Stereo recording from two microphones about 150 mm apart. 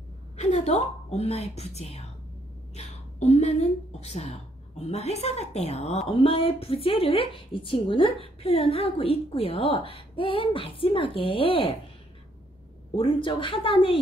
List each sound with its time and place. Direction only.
0.4 s a woman's voice: 45° left (ahead or behind)
12.9 s a woman's voice: 35° left (ahead or behind)